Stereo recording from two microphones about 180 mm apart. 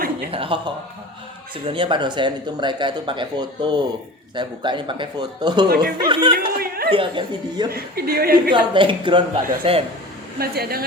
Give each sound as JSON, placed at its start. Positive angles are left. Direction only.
{"t": 0.3, "sound": "a woman's voice", "side_deg": -30}
{"t": 5.6, "sound": "a woman's voice", "side_deg": -60}
{"t": 6.0, "sound": "speech", "side_deg": -25}
{"t": 6.6, "sound": "a sound", "side_deg": -55}
{"t": 6.9, "sound": "speech", "side_deg": -30}
{"t": 7.7, "sound": "a woman's voice", "side_deg": -55}
{"t": 8.5, "sound": "a woman's voice", "side_deg": -25}
{"t": 10.3, "sound": "a woman's voice", "side_deg": -60}